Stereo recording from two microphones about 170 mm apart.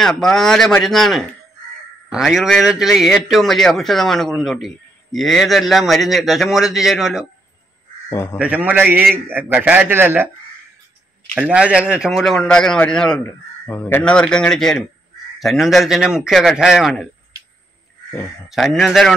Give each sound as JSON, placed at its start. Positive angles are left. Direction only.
{"t": 0.0, "sound": "a man's voice", "side_deg": 0}
{"t": 8.1, "sound": "speech", "side_deg": 15}
{"t": 8.4, "sound": "a man's voice", "side_deg": -10}
{"t": 11.3, "sound": "a man's voice", "side_deg": -5}
{"t": 18.5, "sound": "a man's voice", "side_deg": 0}